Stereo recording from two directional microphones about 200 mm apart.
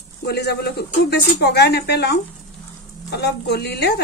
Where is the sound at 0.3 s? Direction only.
55° left (ahead or behind).